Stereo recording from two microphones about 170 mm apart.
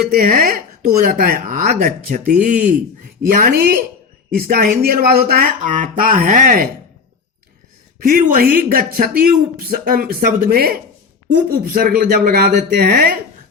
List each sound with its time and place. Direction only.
0.1 s speech: 60° right (ahead or behind)
8.0 s speech: 60° right (ahead or behind)